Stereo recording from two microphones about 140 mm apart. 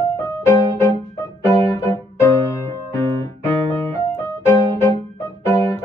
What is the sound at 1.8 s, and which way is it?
Keyboard, 20° left (ahead or behind).